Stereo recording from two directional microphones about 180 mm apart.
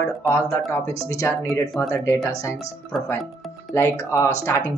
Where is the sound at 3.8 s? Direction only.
15° left (ahead or behind).